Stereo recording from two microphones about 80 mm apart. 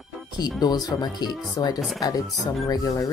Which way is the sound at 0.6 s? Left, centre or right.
Left.